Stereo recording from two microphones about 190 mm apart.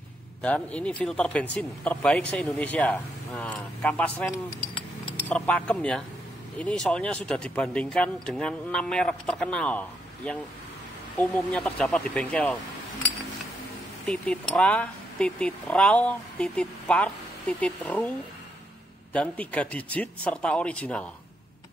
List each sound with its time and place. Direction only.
0.4 s speech: 5° left (ahead or behind)
14.0 s speech: 5° left (ahead or behind)
19.1 s speech: 5° left (ahead or behind)